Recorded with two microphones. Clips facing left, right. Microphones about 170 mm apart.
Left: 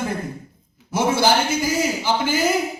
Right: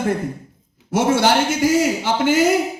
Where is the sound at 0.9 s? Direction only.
75° right (ahead or behind).